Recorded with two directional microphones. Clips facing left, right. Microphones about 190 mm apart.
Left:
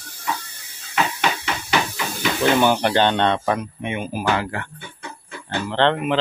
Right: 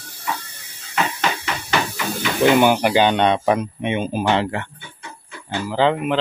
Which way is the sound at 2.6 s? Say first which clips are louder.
Right 2 dB; 10° right (ahead or behind).